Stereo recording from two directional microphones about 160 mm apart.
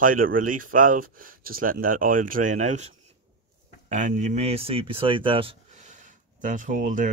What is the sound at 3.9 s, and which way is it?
Speech, 50° right (ahead or behind).